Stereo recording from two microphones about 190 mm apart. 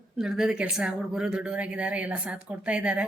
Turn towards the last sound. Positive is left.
turn(degrees=-5)  # may be behind; listen again after turning